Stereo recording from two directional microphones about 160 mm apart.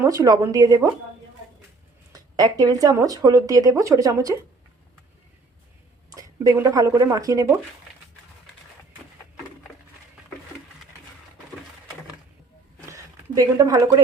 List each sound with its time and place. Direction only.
0.0 s speech: 20° right (ahead or behind)
2.1 s speech: 25° right (ahead or behind)
6.1 s speech: 20° right (ahead or behind)
12.8 s a sound: 20° right (ahead or behind)